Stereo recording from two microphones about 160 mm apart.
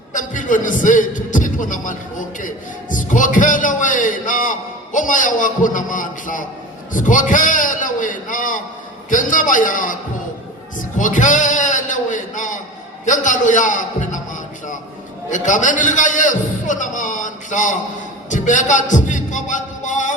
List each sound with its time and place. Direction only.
0.1 s a man's voice: 55° left (ahead or behind)
10.8 s a sound: 55° left (ahead or behind)
13.1 s a man's voice: 50° left (ahead or behind)
15.3 s a man's voice: 50° left (ahead or behind)
18.3 s heart sounds: 50° left (ahead or behind)